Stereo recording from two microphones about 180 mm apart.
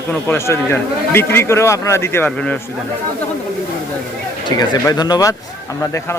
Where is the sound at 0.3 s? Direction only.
15° left (ahead or behind).